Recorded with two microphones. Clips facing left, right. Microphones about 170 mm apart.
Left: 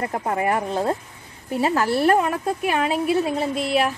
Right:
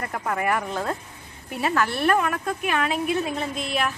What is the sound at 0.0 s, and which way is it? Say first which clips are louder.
A woman's voice: left 3 dB; 30° left (ahead or behind).